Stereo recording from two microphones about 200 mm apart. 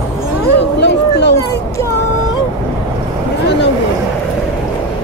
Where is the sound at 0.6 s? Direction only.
60° left (ahead or behind).